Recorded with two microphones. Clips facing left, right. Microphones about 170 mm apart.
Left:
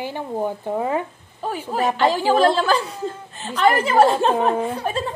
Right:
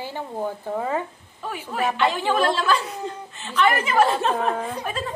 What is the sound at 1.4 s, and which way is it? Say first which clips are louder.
A woman's voice: left 4 dB; 35° left (ahead or behind).